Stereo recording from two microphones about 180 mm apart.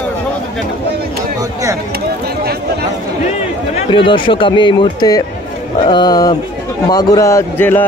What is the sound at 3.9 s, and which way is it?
A man's voice, 30° left (ahead or behind).